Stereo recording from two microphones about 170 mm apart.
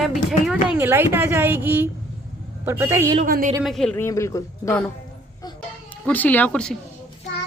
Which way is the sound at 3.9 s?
15° left (ahead or behind).